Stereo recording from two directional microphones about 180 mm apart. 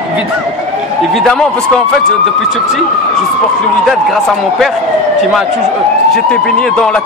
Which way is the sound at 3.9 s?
Centre (ahead or behind).